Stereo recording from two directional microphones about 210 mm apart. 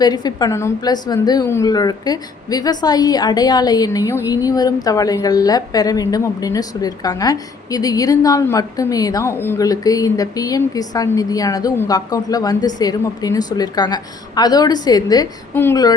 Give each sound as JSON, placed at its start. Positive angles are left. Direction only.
{"t": 0.0, "sound": "a woman's voice", "side_deg": 20}